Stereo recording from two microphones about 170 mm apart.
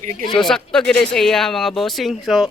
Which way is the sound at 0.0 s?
50° right (ahead or behind).